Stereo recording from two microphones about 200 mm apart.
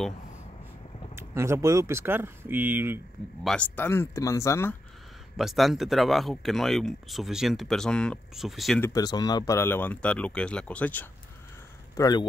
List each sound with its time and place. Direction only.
1.1 s speech: 15° right (ahead or behind)
3.4 s speech: 5° left (ahead or behind)
5.4 s speech: centre (ahead or behind)
8.8 s speech: 20° left (ahead or behind)
12.0 s speech: 20° left (ahead or behind)